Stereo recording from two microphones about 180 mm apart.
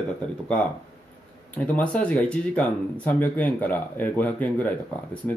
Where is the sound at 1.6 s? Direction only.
10° left (ahead or behind).